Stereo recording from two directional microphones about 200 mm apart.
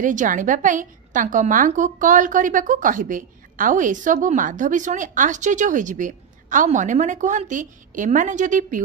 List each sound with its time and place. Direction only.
0.0 s a woman's voice: 40° right (ahead or behind)